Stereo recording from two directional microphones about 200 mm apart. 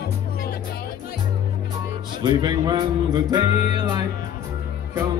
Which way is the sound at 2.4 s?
20° right (ahead or behind).